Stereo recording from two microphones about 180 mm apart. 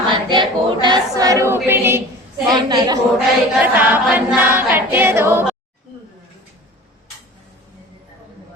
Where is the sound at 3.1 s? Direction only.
10° right (ahead or behind).